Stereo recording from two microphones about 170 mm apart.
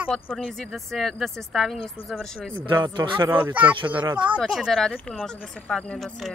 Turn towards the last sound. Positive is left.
turn(degrees=0)  # may be behind; listen again after turning